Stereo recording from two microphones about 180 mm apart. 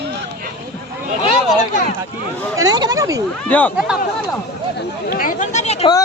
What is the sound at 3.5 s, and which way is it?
Speech, 10° left (ahead or behind).